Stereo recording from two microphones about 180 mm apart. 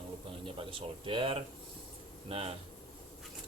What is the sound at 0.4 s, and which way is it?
Speech, 30° right (ahead or behind).